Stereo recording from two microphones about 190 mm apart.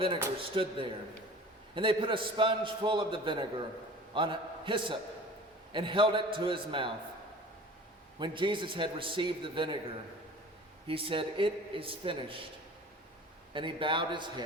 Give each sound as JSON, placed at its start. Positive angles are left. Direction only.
{"t": 0.3, "sound": "a man's voice", "side_deg": -25}
{"t": 8.2, "sound": "a man's voice", "side_deg": -25}
{"t": 10.8, "sound": "a man's voice", "side_deg": -30}
{"t": 13.5, "sound": "a man's voice", "side_deg": -25}